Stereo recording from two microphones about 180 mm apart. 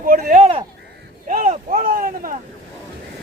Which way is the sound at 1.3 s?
45° right (ahead or behind).